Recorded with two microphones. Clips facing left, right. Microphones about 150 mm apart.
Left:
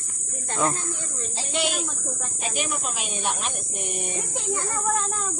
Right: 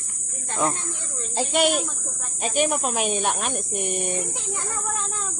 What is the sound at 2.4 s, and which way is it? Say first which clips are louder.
Speech: right 7 dB; 45° right (ahead or behind).